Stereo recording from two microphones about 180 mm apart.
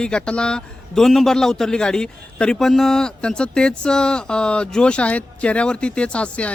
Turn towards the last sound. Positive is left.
turn(degrees=5)  # may be behind; listen again after turning